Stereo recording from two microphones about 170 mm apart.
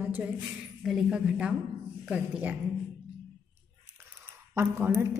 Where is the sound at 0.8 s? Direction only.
5° right (ahead or behind).